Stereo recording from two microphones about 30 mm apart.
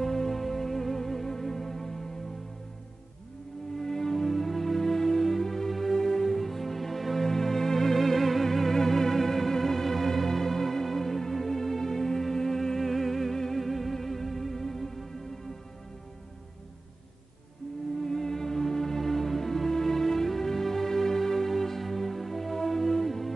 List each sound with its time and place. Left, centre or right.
0.0 s music: centre
3.7 s music: centre
17.9 s music: centre